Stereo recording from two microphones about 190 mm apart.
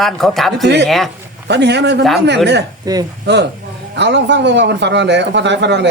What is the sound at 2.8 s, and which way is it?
Speech, 20° right (ahead or behind).